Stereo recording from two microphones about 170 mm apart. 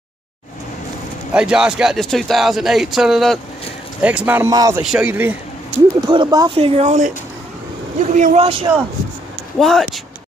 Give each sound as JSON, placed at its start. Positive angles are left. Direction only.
{"t": 1.3, "sound": "a man's voice", "side_deg": -5}
{"t": 4.5, "sound": "speech", "side_deg": -20}
{"t": 4.8, "sound": "a man's voice", "side_deg": -5}
{"t": 5.9, "sound": "speech", "side_deg": -25}
{"t": 6.6, "sound": "speech", "side_deg": -40}
{"t": 8.1, "sound": "speech", "side_deg": -45}
{"t": 8.7, "sound": "a man's voice", "side_deg": -15}
{"t": 9.6, "sound": "speech", "side_deg": 0}